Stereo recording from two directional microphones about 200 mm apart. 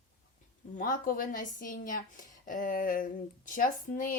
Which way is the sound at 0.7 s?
45° left (ahead or behind).